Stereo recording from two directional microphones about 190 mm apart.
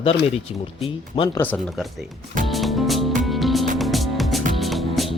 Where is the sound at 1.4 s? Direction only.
5° left (ahead or behind).